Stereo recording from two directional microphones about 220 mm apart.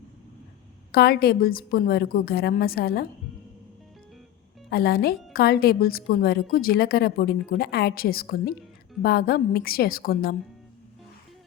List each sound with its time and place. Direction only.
0.9 s a woman's voice: 45° left (ahead or behind)
4.7 s a woman's voice: 45° left (ahead or behind)